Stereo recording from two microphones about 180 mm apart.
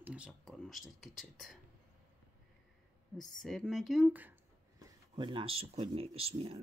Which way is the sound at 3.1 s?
Centre (ahead or behind).